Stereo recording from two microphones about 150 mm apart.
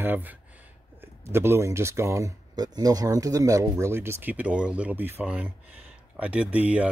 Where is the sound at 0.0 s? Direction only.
10° right (ahead or behind).